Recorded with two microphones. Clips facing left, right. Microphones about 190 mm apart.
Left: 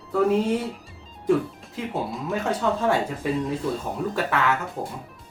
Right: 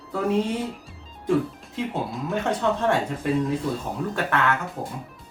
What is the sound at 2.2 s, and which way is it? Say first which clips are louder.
Speech: right 1 dB; centre (ahead or behind).